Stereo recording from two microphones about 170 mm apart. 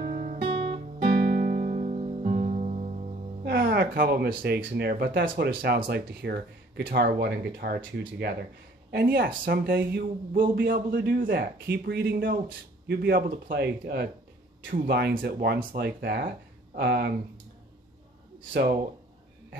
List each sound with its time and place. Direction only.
0.0 s guitar: 50° right (ahead or behind)
0.7 s music: 65° right (ahead or behind); by 3.1 s 40° right (ahead or behind)
3.4 s speech: 75° right (ahead or behind)
14.7 s speech: 60° right (ahead or behind)